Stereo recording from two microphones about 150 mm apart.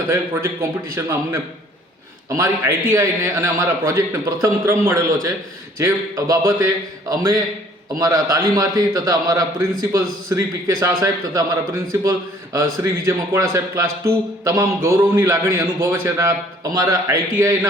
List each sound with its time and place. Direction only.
0.1 s a man's voice: 20° right (ahead or behind)
2.3 s a man's voice: 20° right (ahead or behind)
7.9 s a man's voice: 25° right (ahead or behind)